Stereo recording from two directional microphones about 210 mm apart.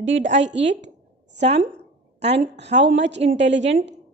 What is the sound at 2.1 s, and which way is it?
Speech, 30° right (ahead or behind).